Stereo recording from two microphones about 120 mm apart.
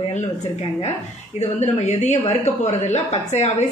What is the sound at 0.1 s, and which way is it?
A woman's voice, 60° left (ahead or behind).